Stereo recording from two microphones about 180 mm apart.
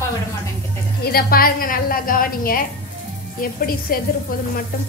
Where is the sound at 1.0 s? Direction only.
55° left (ahead or behind).